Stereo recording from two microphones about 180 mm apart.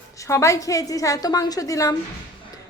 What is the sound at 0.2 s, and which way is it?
A woman's voice, 15° left (ahead or behind).